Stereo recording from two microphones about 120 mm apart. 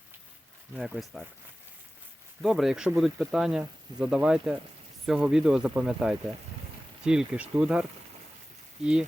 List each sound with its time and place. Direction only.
0.8 s speech: centre (ahead or behind)
2.4 s speech: centre (ahead or behind)